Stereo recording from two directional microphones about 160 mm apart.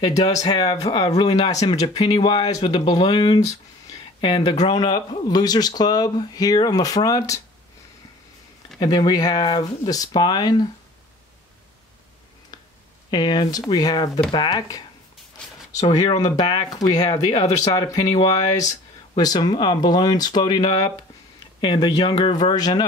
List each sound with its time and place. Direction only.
0.0 s speech: 25° left (ahead or behind)
0.6 s speech: 35° left (ahead or behind)
8.7 s speech: 25° left (ahead or behind)
13.1 s speech: 25° left (ahead or behind)